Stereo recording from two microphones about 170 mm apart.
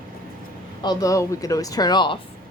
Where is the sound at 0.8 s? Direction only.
20° left (ahead or behind).